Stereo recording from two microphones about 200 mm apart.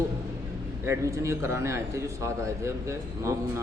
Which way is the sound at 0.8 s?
15° right (ahead or behind).